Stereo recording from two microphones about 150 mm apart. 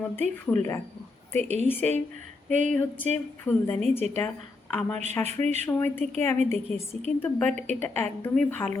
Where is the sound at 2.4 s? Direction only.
55° right (ahead or behind).